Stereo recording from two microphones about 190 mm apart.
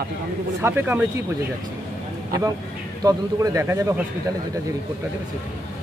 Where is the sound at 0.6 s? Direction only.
10° right (ahead or behind).